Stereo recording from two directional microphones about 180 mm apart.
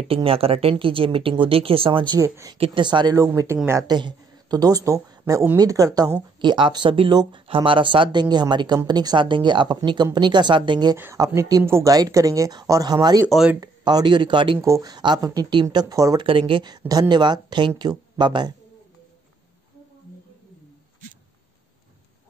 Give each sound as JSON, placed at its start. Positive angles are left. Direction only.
{"t": 0.1, "sound": "speech", "side_deg": -30}
{"t": 2.5, "sound": "speech", "side_deg": -30}
{"t": 11.0, "sound": "speech", "side_deg": -10}
{"t": 13.3, "sound": "speech", "side_deg": 0}
{"t": 13.6, "sound": "speech", "side_deg": -20}